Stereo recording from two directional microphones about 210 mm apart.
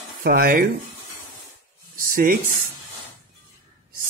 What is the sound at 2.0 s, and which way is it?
Speech, 40° right (ahead or behind).